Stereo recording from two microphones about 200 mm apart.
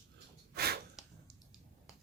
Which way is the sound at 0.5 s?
50° right (ahead or behind).